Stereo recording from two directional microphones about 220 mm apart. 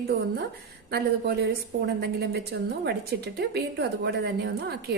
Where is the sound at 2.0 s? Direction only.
50° right (ahead or behind).